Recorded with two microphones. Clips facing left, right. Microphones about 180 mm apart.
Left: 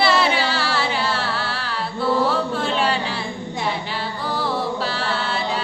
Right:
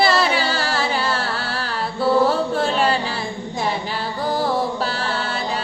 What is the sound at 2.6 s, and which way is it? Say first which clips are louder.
A capella: right 2 dB; 45° right (ahead or behind).